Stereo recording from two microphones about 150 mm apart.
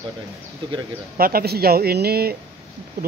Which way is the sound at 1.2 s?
85° right.